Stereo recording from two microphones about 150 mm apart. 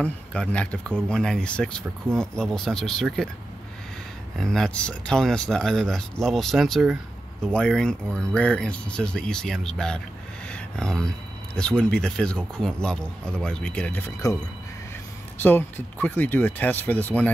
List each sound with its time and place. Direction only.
0.0 s speech: 10° left (ahead or behind)
4.4 s speech: 5° left (ahead or behind)
15.3 s speech: 10° left (ahead or behind)